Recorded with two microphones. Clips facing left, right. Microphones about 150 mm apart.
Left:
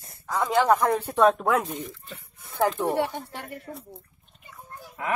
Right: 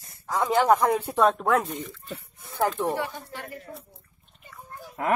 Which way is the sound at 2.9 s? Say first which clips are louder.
Left 4 dB; 65° left (ahead or behind).